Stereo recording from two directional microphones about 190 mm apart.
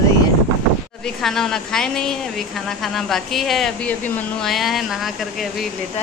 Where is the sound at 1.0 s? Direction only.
Centre (ahead or behind).